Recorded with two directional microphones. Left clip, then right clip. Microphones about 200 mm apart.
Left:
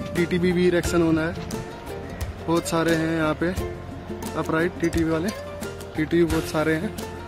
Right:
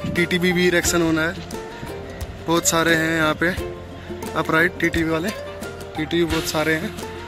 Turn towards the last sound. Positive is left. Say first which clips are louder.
# right 2 dB
turn(degrees=5)  # may be behind; listen again after turning